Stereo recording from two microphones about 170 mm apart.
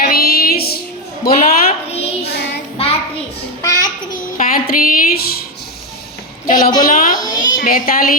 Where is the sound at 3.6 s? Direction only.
20° left (ahead or behind).